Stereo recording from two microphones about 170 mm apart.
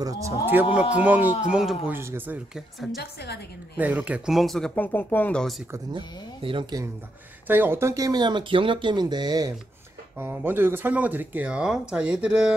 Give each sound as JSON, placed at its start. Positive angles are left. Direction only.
{"t": 0.0, "sound": "speech", "side_deg": -15}
{"t": 1.9, "sound": "speech", "side_deg": -15}
{"t": 3.0, "sound": "a woman's voice", "side_deg": 70}
{"t": 3.7, "sound": "speech", "side_deg": -10}
{"t": 6.4, "sound": "speech", "side_deg": -25}
{"t": 7.4, "sound": "speech", "side_deg": -10}
{"t": 10.1, "sound": "speech", "side_deg": -10}